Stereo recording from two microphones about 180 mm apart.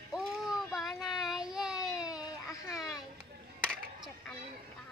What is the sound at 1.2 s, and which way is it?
Child singing, 5° right (ahead or behind).